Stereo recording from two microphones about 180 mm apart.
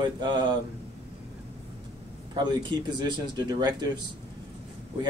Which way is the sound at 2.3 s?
25° right (ahead or behind).